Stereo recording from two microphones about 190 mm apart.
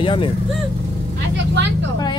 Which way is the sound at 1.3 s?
65° right (ahead or behind).